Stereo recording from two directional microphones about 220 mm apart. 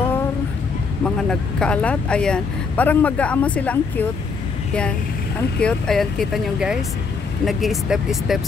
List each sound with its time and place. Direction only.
1.0 s speech: 5° left (ahead or behind)
5.6 s speech: 5° left (ahead or behind)